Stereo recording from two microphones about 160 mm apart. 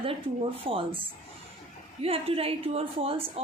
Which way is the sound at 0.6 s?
35° right (ahead or behind).